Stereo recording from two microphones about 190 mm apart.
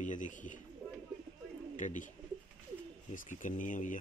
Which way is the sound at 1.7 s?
40° left (ahead or behind).